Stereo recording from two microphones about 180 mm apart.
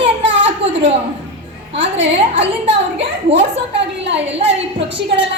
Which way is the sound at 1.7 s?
85° right.